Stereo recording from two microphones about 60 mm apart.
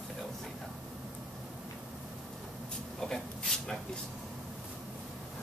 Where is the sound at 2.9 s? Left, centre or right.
Centre.